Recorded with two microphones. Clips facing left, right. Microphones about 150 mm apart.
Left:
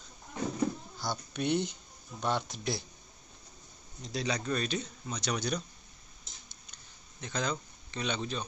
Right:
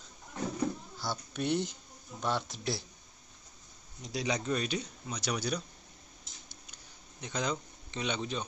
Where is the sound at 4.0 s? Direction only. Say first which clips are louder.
Even; 15° right (ahead or behind).